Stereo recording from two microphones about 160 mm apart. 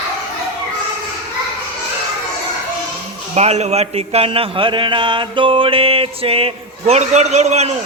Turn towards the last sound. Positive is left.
turn(degrees=-45)  # may be behind; listen again after turning